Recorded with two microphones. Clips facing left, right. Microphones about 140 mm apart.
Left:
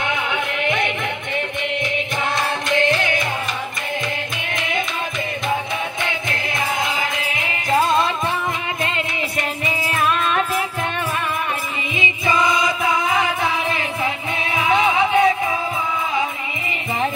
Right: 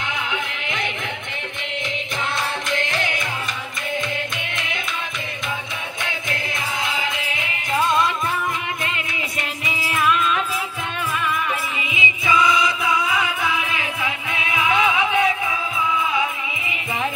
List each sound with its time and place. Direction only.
0.0 s music: 60° left (ahead or behind)
7.7 s music: 30° left (ahead or behind)
9.9 s music: 40° left (ahead or behind)
11.9 s music: 45° left (ahead or behind)